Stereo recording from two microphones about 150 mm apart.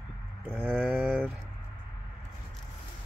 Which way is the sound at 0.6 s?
5° left (ahead or behind).